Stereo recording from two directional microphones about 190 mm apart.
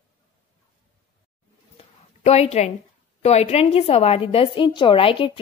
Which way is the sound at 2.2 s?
35° left (ahead or behind).